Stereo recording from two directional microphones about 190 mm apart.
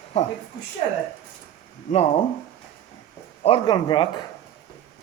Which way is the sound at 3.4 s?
25° left (ahead or behind).